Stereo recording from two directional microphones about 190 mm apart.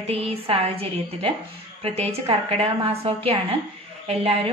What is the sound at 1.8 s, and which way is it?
A woman's voice, 30° right (ahead or behind).